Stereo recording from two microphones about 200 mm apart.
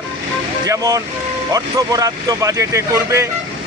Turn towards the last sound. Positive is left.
turn(degrees=-15)  # may be behind; listen again after turning